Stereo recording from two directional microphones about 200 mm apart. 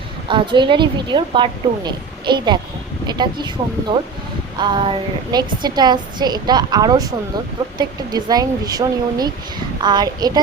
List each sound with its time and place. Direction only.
0.3 s a woman's voice: 25° right (ahead or behind)